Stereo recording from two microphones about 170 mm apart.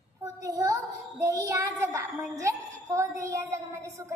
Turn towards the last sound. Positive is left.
turn(degrees=-15)  # may be behind; listen again after turning